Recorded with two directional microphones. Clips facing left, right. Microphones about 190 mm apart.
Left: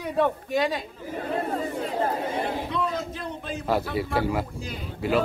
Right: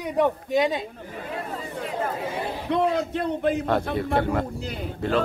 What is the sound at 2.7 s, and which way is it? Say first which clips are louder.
Speech: right 6 dB; 65° right (ahead or behind).